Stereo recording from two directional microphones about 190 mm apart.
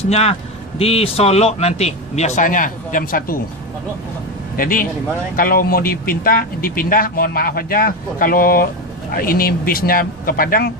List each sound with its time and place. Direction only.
0.0 s speech: 35° left (ahead or behind)
4.5 s speech: 45° left (ahead or behind)